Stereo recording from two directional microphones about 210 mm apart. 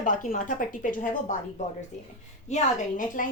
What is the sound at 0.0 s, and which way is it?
A woman's voice, 40° left (ahead or behind).